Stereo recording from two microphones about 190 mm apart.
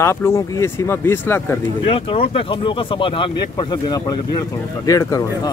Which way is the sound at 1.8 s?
30° left (ahead or behind).